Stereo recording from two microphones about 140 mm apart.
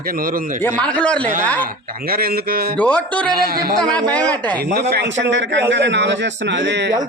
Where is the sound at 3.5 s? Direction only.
90° right.